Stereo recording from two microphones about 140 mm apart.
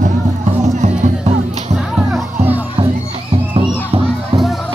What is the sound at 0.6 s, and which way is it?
Music, 60° right (ahead or behind).